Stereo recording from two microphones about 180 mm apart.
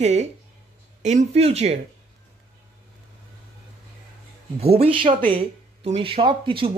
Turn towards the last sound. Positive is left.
turn(degrees=-30)  # may be behind; listen again after turning